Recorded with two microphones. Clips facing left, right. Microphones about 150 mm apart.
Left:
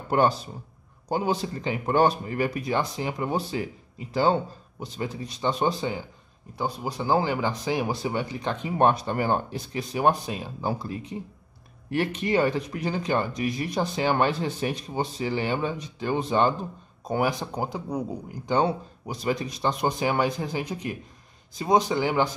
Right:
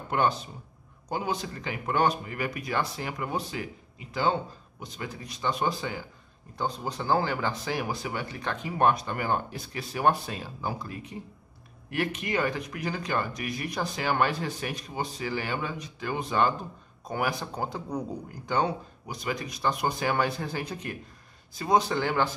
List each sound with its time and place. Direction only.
0.1 s speech: 35° left (ahead or behind)
6.6 s speech: 10° left (ahead or behind)
10.6 s speech: 30° left (ahead or behind); by 18.0 s 10° left (ahead or behind)
18.5 s speech: 30° left (ahead or behind)